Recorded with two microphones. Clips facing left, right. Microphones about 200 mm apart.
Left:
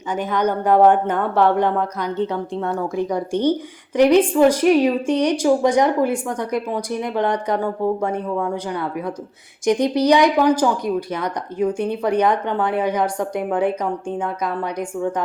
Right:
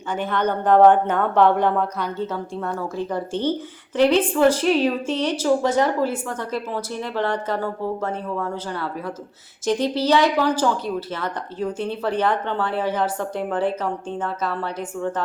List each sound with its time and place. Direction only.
0.3 s a woman's voice: 10° left (ahead or behind)